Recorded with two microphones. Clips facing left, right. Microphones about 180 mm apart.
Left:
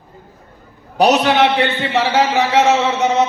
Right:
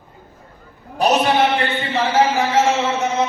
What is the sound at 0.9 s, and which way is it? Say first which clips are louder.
A man's voice: left 3 dB; 75° left (ahead or behind).